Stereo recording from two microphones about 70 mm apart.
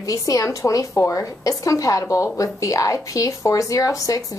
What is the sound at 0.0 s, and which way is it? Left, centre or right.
A woman's voice, left.